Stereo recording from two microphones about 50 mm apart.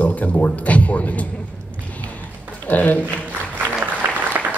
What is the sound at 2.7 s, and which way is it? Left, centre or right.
Speech, left.